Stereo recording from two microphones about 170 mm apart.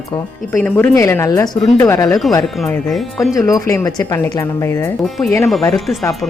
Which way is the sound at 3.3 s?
20° left (ahead or behind).